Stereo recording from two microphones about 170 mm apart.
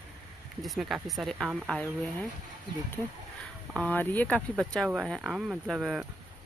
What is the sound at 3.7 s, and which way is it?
Speech, 10° left (ahead or behind).